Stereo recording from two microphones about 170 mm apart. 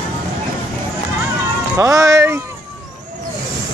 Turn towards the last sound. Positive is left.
turn(degrees=-15)  # may be behind; listen again after turning